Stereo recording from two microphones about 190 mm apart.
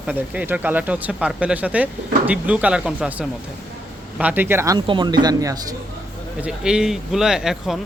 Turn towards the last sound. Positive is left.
turn(degrees=0)  # may be behind; listen again after turning